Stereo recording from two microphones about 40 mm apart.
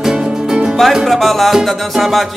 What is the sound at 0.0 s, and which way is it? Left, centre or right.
Music, centre.